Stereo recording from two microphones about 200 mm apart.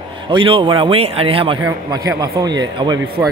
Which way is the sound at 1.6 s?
15° right (ahead or behind).